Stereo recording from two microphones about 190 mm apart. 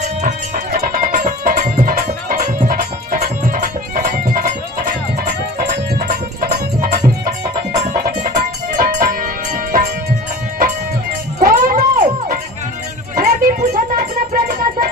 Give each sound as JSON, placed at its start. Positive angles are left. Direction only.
{"t": 0.2, "sound": "music", "side_deg": -45}
{"t": 11.3, "sound": "a sound", "side_deg": -45}
{"t": 13.1, "sound": "music", "side_deg": -45}